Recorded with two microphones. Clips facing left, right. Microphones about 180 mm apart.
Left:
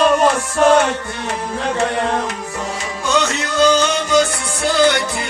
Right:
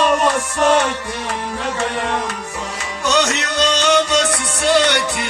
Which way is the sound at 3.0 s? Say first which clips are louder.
Right 1 dB; 75° right (ahead or behind).